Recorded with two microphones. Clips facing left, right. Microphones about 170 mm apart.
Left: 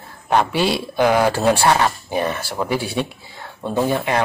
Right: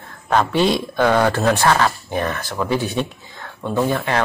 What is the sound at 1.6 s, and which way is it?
Speech, 20° left (ahead or behind).